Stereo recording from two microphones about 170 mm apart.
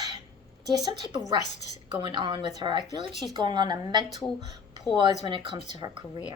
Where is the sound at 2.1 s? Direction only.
25° right (ahead or behind).